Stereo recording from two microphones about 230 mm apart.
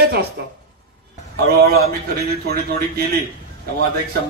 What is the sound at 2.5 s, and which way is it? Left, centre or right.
Speech, right.